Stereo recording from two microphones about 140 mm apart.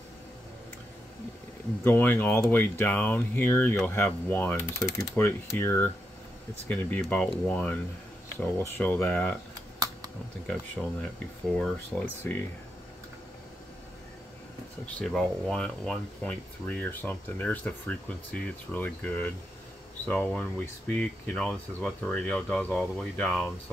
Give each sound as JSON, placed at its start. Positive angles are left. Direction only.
{"t": 1.9, "sound": "speech", "side_deg": 15}
{"t": 10.4, "sound": "speech", "side_deg": 5}
{"t": 15.0, "sound": "speech", "side_deg": 5}